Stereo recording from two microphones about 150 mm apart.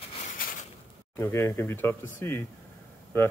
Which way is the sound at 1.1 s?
15° left (ahead or behind).